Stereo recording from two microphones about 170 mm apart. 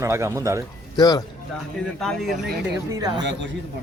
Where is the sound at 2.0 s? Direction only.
Centre (ahead or behind).